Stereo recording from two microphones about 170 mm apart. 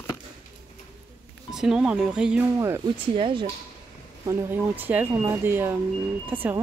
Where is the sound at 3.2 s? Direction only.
30° right (ahead or behind).